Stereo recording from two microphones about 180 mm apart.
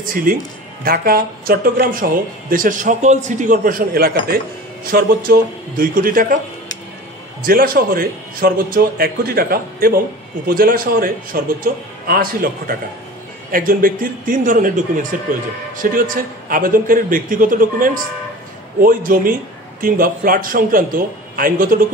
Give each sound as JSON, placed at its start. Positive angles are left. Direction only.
{"t": 0.0, "sound": "a man's voice", "side_deg": -50}
{"t": 7.4, "sound": "a man's voice", "side_deg": -55}